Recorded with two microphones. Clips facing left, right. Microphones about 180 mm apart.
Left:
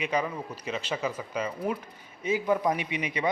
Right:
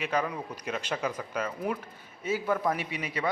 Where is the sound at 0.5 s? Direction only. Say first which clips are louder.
Left 1 dB; 10° right (ahead or behind).